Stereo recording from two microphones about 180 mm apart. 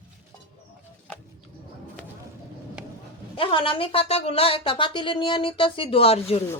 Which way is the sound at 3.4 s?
30° left (ahead or behind).